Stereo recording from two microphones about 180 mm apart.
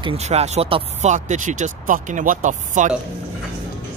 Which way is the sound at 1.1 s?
45° right (ahead or behind).